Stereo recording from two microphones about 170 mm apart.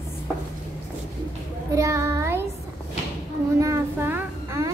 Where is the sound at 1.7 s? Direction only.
20° right (ahead or behind).